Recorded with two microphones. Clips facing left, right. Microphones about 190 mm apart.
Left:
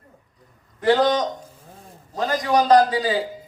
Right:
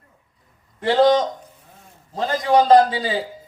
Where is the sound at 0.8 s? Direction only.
25° right (ahead or behind).